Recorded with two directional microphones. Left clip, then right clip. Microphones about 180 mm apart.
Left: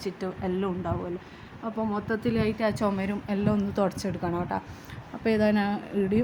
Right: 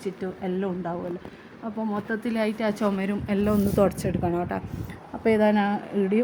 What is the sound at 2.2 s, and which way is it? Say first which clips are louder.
Speech: right 1 dB; 30° right (ahead or behind).